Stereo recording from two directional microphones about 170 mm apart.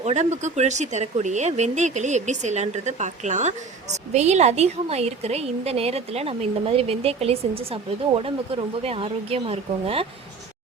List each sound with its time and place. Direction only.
0.0 s a woman's voice: 40° right (ahead or behind)